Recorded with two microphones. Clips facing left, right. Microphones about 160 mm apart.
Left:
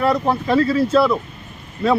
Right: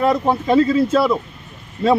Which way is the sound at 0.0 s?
20° right (ahead or behind).